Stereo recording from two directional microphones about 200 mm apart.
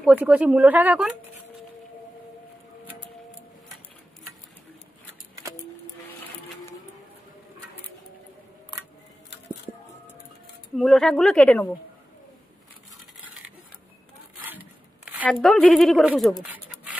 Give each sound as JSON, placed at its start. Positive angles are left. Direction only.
{"t": 0.0, "sound": "speech", "side_deg": -5}
{"t": 5.4, "sound": "music", "side_deg": -15}
{"t": 10.8, "sound": "a woman's voice", "side_deg": 0}
{"t": 15.2, "sound": "speech", "side_deg": 0}